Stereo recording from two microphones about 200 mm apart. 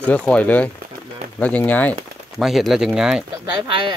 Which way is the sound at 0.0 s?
5° left (ahead or behind).